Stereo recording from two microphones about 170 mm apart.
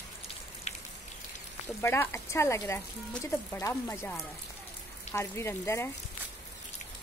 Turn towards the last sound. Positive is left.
turn(degrees=15)  # may be behind; listen again after turning